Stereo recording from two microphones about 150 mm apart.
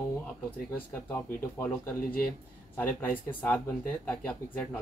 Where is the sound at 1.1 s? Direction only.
15° left (ahead or behind).